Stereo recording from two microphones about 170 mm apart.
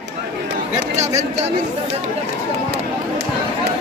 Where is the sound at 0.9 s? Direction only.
40° right (ahead or behind).